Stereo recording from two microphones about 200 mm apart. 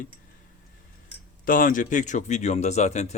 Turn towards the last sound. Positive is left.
turn(degrees=35)  # may be behind; listen again after turning